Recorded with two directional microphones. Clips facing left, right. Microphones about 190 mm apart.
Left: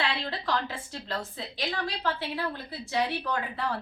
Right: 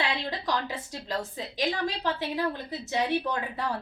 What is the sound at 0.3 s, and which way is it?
A woman's voice, 15° right (ahead or behind).